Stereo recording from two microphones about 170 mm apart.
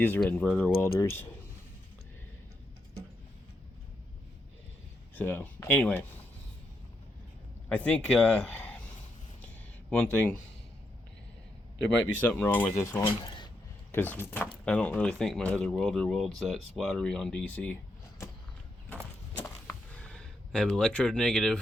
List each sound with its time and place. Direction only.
0.0 s speech: 10° left (ahead or behind)
5.1 s speech: 10° left (ahead or behind)
7.7 s speech: 10° left (ahead or behind)
10.0 s speech: 10° left (ahead or behind)
12.1 s speech: 10° left (ahead or behind)
13.2 s a sound: 25° left (ahead or behind)
13.9 s speech: 10° left (ahead or behind)
19.4 s a sound: 10° left (ahead or behind)